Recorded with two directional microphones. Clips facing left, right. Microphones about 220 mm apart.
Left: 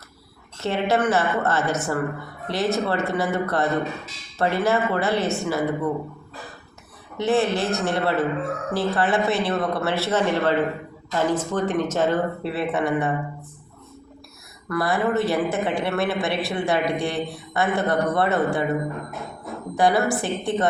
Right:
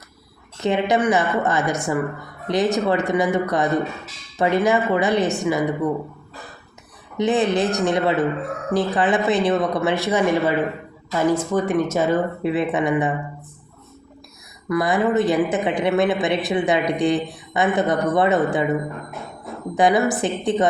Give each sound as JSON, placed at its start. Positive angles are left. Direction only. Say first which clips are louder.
{"t": 0.6, "sound": "speech", "louder": "right 3 dB", "side_deg": -15}
{"t": 7.2, "sound": "speech", "louder": "right 2 dB", "side_deg": -15}
{"t": 14.7, "sound": "a woman's voice", "louder": "right 3 dB", "side_deg": -15}